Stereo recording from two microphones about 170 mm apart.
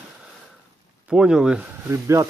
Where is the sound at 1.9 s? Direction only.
15° right (ahead or behind).